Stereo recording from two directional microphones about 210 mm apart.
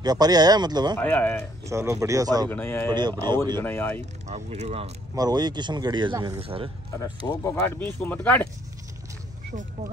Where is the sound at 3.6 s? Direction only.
10° left (ahead or behind).